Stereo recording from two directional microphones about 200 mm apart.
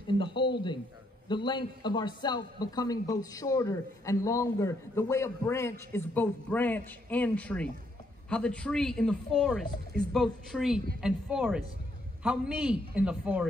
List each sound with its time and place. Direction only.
0.0 s speech: 25° left (ahead or behind); by 13.5 s 5° right (ahead or behind)